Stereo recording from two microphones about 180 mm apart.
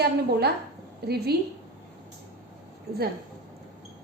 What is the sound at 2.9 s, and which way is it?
Speech, 60° right (ahead or behind).